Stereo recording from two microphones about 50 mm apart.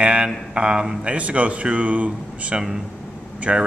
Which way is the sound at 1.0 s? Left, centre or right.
Right.